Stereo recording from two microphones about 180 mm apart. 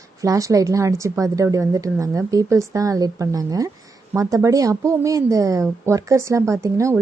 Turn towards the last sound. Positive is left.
turn(degrees=-15)  # may be behind; listen again after turning